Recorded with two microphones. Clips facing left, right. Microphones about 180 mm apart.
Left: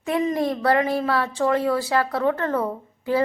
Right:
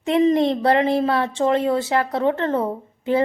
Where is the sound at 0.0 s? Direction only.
25° right (ahead or behind).